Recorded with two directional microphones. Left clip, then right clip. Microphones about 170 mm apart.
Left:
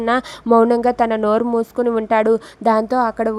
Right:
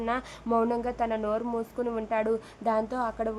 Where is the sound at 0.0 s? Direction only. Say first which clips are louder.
Left 12 dB; 50° left (ahead or behind).